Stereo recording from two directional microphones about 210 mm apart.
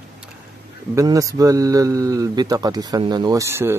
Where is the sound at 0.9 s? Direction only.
15° right (ahead or behind).